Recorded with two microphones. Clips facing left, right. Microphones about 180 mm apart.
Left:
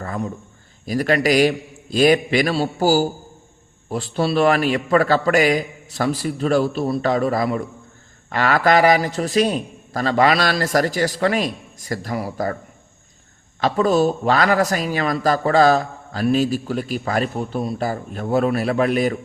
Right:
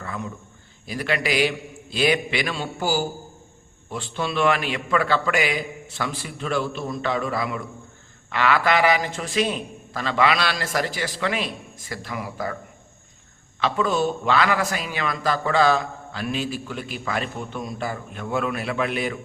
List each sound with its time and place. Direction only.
0.0 s a sound: 40° left (ahead or behind)
0.9 s a man's voice: 40° left (ahead or behind)
13.6 s a man's voice: 40° left (ahead or behind)